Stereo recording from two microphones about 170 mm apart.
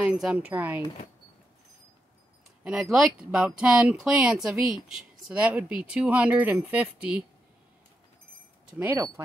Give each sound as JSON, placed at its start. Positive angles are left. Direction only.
{"t": 0.0, "sound": "speech", "side_deg": -5}
{"t": 2.6, "sound": "speech", "side_deg": -5}
{"t": 8.7, "sound": "speech", "side_deg": -15}